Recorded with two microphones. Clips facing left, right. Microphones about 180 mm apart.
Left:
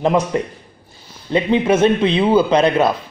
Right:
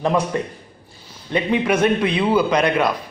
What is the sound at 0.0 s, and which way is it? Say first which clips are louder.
A man's voice: left 3 dB; 20° left (ahead or behind).